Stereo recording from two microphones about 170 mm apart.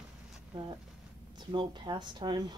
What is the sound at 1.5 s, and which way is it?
Speech, 25° right (ahead or behind).